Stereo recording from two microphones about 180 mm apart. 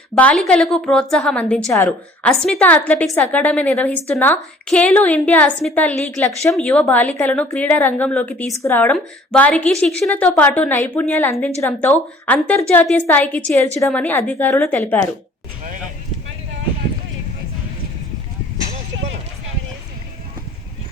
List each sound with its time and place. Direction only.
0.2 s a woman's voice: 5° left (ahead or behind)
2.3 s a woman's voice: 5° left (ahead or behind)
6.5 s a woman's voice: centre (ahead or behind)